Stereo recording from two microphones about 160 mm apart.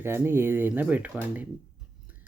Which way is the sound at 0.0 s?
15° right (ahead or behind).